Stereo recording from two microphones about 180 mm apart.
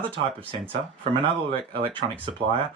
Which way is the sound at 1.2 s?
30° right (ahead or behind).